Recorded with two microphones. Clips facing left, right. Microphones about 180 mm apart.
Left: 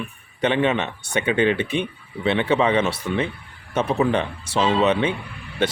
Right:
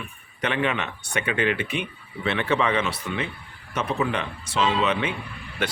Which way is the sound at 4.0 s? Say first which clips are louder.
Left 6 dB; 30° left (ahead or behind).